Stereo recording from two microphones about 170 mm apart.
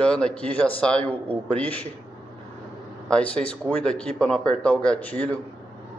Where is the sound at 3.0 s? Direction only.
5° left (ahead or behind).